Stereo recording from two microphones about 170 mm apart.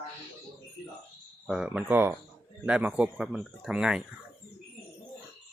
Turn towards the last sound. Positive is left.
turn(degrees=-5)  # may be behind; listen again after turning